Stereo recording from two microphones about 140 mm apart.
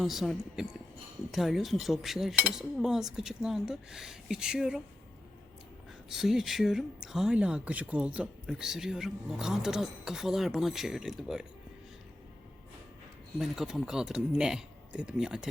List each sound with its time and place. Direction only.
0.0 s speech: centre (ahead or behind)
6.1 s speech: centre (ahead or behind)
13.4 s speech: 5° right (ahead or behind)